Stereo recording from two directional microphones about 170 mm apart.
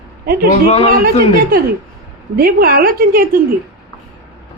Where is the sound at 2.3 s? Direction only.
60° right (ahead or behind).